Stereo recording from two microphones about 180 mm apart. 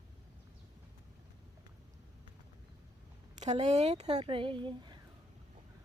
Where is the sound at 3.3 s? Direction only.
40° right (ahead or behind).